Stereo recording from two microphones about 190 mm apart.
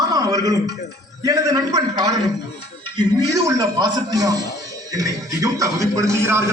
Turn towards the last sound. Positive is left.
turn(degrees=-15)  # may be behind; listen again after turning